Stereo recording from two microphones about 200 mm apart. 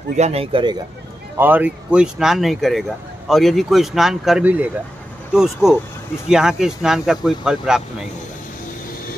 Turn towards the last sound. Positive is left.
turn(degrees=-5)  # may be behind; listen again after turning